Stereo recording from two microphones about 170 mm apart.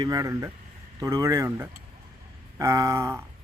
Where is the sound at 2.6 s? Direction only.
20° right (ahead or behind).